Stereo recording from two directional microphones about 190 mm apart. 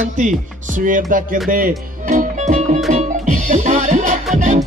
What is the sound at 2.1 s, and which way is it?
Music, 35° right (ahead or behind).